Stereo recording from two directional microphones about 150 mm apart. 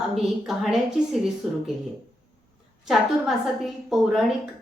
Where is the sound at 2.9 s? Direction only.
Centre (ahead or behind).